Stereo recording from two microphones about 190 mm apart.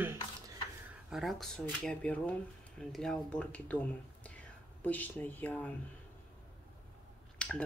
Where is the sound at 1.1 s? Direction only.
Centre (ahead or behind).